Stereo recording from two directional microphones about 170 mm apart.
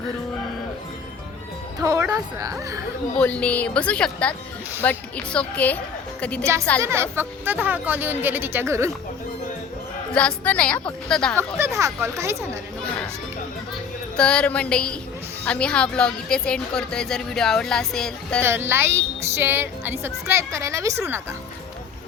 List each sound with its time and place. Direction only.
1.8 s a woman's voice: 20° right (ahead or behind)
3.2 s a woman's voice: 5° left (ahead or behind)
6.8 s speech: 15° right (ahead or behind)
10.1 s a woman's voice: 5° left (ahead or behind)
11.3 s speech: 15° right (ahead or behind)
14.2 s speech: 5° left (ahead or behind)
18.4 s speech: 15° right (ahead or behind)